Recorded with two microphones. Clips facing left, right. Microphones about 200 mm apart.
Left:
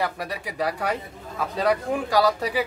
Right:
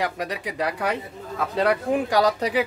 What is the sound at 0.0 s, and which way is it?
Speech, 20° right (ahead or behind).